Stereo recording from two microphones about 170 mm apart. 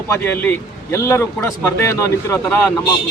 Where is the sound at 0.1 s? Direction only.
10° left (ahead or behind).